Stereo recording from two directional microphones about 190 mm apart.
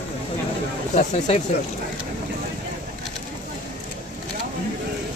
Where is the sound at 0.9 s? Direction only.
40° left (ahead or behind).